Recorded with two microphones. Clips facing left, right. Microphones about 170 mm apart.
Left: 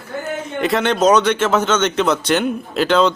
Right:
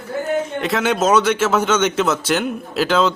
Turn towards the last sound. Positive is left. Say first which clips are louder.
# left 2 dB
turn(degrees=-5)  # may be behind; listen again after turning